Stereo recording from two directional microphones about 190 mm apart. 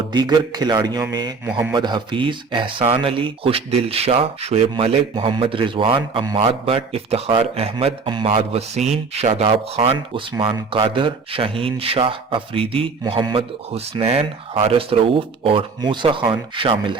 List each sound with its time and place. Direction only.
0.1 s speech: 20° right (ahead or behind)
1.5 s speech: 10° right (ahead or behind)
1.7 s speech: 25° right (ahead or behind)